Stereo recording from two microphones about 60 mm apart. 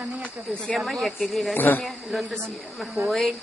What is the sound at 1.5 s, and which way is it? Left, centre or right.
Speech, left.